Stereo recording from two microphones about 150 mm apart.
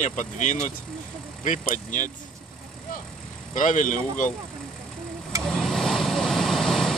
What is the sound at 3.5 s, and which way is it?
Speech, 60° left (ahead or behind).